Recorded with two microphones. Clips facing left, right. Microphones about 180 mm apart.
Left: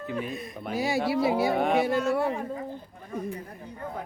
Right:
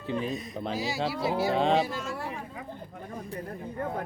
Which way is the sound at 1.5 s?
25° right (ahead or behind).